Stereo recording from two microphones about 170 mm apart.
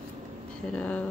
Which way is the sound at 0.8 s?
5° left (ahead or behind).